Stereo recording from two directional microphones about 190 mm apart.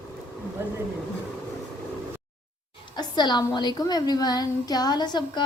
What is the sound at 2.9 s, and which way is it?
A woman's voice, 25° left (ahead or behind).